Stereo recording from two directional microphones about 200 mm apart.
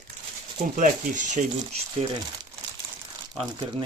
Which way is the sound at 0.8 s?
40° right (ahead or behind).